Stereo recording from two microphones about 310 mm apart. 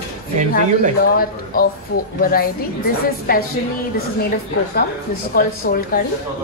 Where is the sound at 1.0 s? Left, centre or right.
Left.